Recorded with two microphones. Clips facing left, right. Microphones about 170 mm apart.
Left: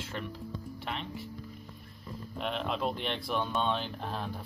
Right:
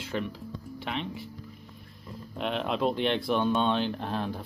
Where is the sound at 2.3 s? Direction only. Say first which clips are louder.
Right 4 dB; centre (ahead or behind).